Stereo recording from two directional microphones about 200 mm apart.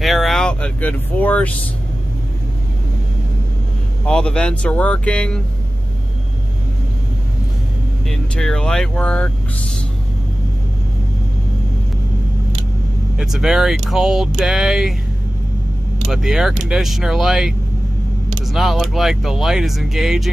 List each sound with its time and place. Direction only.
0.0 s vehicle: centre (ahead or behind)
4.0 s speech: 5° left (ahead or behind)
8.1 s speech: 5° left (ahead or behind)
13.2 s speech: 5° right (ahead or behind)
16.1 s speech: centre (ahead or behind)